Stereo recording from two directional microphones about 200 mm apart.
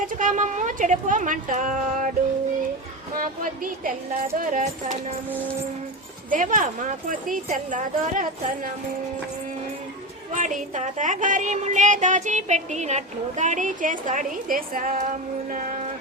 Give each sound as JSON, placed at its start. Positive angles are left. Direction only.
{"t": 0.2, "sound": "speech", "side_deg": -40}
{"t": 3.2, "sound": "speech", "side_deg": -40}
{"t": 6.3, "sound": "speech", "side_deg": -40}
{"t": 10.3, "sound": "speech", "side_deg": -40}